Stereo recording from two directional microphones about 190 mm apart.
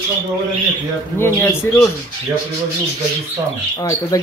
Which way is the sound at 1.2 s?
10° left (ahead or behind).